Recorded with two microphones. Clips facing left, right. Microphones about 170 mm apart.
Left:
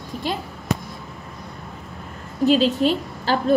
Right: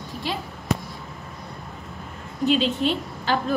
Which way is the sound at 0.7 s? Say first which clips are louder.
Left 1 dB; centre (ahead or behind).